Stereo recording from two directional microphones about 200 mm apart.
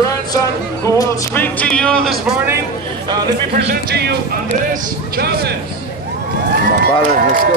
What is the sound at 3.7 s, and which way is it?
Speech, 55° right (ahead or behind).